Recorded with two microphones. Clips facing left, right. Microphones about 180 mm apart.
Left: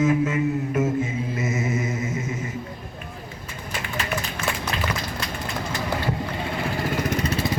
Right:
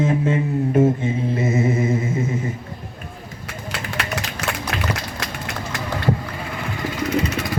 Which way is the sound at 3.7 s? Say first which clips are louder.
Right 1 dB; 80° right.